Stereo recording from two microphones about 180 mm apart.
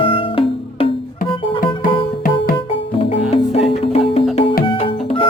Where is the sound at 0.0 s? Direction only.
30° left (ahead or behind).